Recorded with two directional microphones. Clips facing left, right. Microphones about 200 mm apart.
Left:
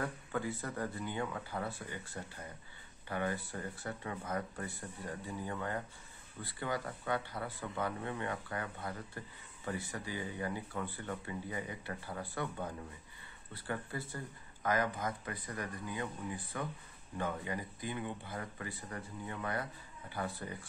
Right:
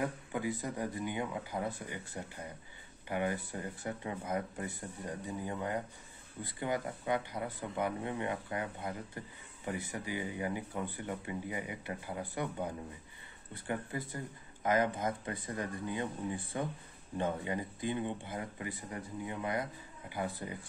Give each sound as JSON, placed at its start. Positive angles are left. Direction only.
{"t": 0.0, "sound": "speech", "side_deg": -15}